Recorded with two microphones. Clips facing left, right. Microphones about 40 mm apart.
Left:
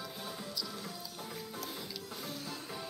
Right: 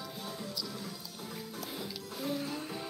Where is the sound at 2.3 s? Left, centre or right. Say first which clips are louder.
Right 6 dB; right.